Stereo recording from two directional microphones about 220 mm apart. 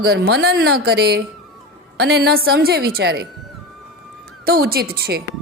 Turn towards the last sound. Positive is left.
turn(degrees=-45)  # may be behind; listen again after turning